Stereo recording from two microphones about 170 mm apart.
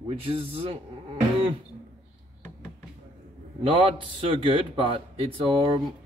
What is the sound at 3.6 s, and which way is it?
Speech, 30° right (ahead or behind).